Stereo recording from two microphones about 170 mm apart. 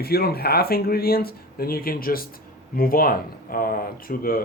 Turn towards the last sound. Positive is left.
turn(degrees=60)  # may be behind; listen again after turning